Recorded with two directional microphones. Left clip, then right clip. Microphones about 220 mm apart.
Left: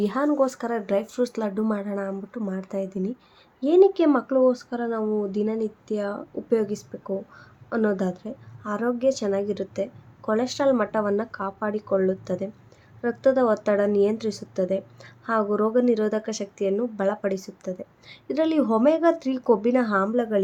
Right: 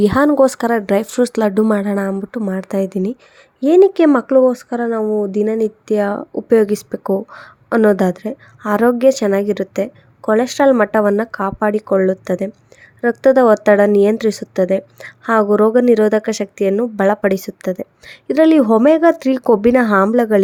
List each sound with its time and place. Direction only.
0.0 s a woman's voice: 40° right (ahead or behind)